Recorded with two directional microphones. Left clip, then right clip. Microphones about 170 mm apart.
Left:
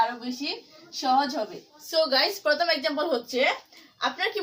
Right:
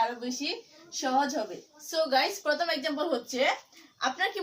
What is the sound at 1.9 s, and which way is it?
A woman's voice, 25° left (ahead or behind).